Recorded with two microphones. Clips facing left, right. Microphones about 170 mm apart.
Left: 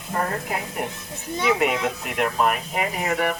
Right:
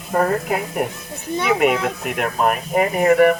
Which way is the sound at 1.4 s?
55° right (ahead or behind).